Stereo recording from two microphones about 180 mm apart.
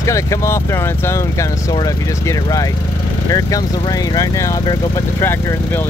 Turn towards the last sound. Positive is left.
turn(degrees=10)  # may be behind; listen again after turning